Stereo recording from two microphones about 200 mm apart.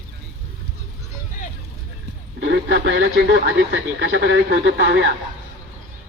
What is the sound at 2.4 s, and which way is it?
Speech, 60° right (ahead or behind).